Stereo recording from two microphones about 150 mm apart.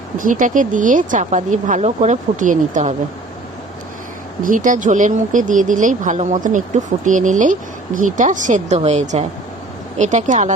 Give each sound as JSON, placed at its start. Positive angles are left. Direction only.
{"t": 0.2, "sound": "speech", "side_deg": -60}
{"t": 4.4, "sound": "speech", "side_deg": -60}